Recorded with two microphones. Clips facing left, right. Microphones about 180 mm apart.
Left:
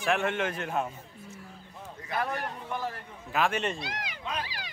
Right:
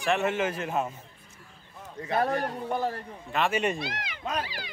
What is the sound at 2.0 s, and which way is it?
A man's voice, 35° right (ahead or behind).